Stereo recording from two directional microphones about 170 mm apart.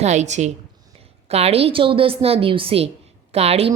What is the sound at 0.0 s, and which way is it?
A woman's voice, 45° right (ahead or behind).